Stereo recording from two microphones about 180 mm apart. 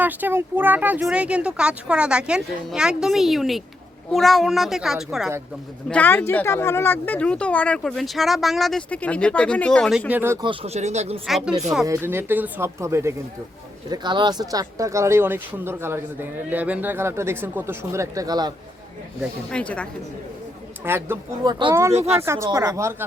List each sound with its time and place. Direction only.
0.0 s speech: 10° right (ahead or behind)
10.1 s speech: 10° right (ahead or behind)
10.4 s speech: 30° right (ahead or behind)
11.3 s speech: centre (ahead or behind)
11.9 s speech: 10° right (ahead or behind)
19.5 s speech: 5° left (ahead or behind)
20.8 s speech: 15° right (ahead or behind)